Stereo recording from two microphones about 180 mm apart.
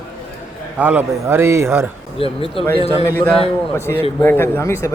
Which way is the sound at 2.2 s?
30° left (ahead or behind).